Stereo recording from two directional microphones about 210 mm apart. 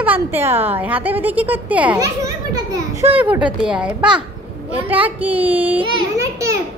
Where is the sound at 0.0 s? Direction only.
10° right (ahead or behind).